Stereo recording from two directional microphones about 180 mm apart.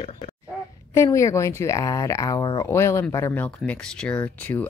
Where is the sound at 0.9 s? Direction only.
15° left (ahead or behind).